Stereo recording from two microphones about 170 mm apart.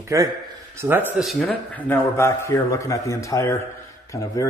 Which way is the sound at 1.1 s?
Centre (ahead or behind).